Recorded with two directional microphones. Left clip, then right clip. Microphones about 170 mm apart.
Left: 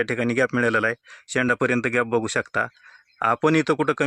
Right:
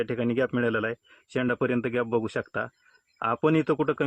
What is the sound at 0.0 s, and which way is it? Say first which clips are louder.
Speech: left 5 dB; 25° left (ahead or behind).